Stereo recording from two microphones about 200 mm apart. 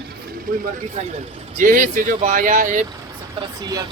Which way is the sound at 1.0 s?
30° right (ahead or behind).